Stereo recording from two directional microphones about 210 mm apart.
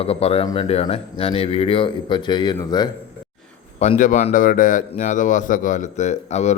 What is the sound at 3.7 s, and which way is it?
A man's voice, 35° left (ahead or behind).